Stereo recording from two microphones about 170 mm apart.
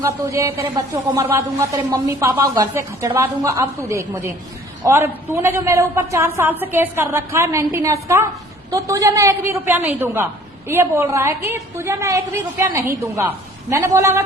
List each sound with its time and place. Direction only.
0.0 s a woman's voice: 15° right (ahead or behind)